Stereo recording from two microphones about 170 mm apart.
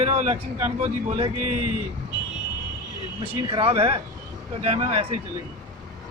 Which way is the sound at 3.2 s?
30° right (ahead or behind).